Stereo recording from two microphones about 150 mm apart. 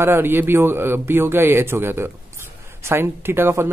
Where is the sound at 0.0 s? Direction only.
15° right (ahead or behind).